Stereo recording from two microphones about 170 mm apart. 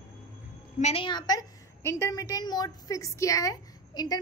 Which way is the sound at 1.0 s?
25° left (ahead or behind).